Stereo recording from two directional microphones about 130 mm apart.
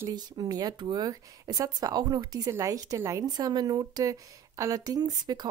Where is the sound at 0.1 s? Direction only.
30° right (ahead or behind).